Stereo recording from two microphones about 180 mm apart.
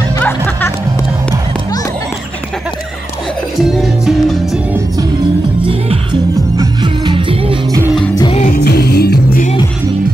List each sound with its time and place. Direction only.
0.2 s music: 10° left (ahead or behind)
3.6 s music: centre (ahead or behind)
6.5 s music: 20° right (ahead or behind)
8.1 s music: 25° left (ahead or behind)
8.5 s music: 60° left (ahead or behind)